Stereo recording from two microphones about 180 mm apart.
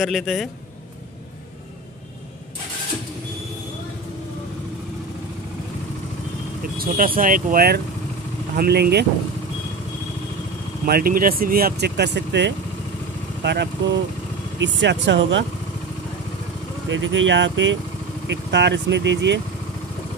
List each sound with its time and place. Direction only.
0.0 s a man's voice: centre (ahead or behind)
6.8 s speech: 50° right (ahead or behind)
10.9 s speech: 55° right (ahead or behind)
14.6 s speech: 85° right
16.9 s speech: 90° right
18.2 s speech: 75° right (ahead or behind)